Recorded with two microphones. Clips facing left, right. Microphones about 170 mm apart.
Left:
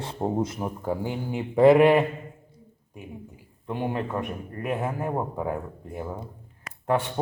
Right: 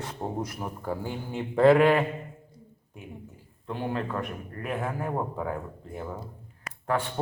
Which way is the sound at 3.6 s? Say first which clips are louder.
Left 2 dB; 15° left (ahead or behind).